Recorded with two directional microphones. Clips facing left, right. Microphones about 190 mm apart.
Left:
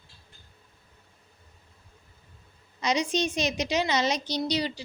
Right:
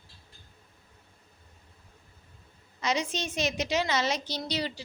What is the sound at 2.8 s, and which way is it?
A woman's voice, 15° left (ahead or behind).